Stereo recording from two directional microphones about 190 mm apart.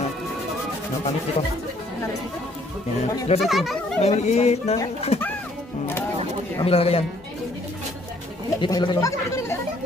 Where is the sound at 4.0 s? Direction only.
35° left (ahead or behind).